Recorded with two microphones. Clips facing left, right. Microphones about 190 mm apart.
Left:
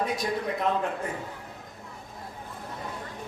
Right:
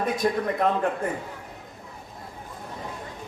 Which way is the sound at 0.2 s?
55° right (ahead or behind).